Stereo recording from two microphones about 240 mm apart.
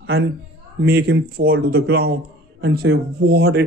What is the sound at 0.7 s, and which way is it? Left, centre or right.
Speech, right.